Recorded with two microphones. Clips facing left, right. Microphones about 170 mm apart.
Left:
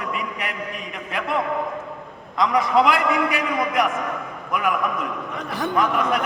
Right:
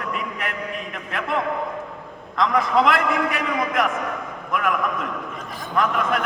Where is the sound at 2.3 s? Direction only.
Centre (ahead or behind).